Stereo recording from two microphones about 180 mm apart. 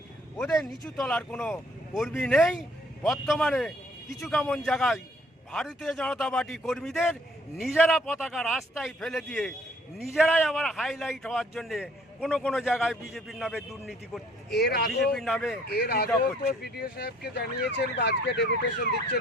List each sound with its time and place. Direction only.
0.3 s a man's voice: 5° left (ahead or behind)
14.5 s ambulance: 60° left (ahead or behind)
15.0 s a man's voice: centre (ahead or behind)
15.7 s ambulance: 60° left (ahead or behind)